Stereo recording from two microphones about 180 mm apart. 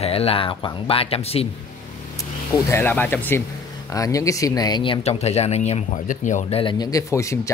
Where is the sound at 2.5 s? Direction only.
10° left (ahead or behind); by 6.4 s 45° left (ahead or behind).